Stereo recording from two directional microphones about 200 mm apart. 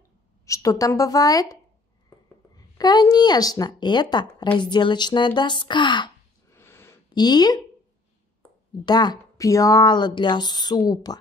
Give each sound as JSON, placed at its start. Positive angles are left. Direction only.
{"t": 0.5, "sound": "a woman's voice", "side_deg": 15}
{"t": 6.5, "sound": "a sound", "side_deg": 10}
{"t": 8.8, "sound": "speech", "side_deg": 20}